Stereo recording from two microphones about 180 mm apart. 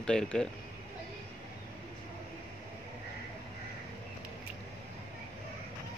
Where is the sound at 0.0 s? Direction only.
5° left (ahead or behind).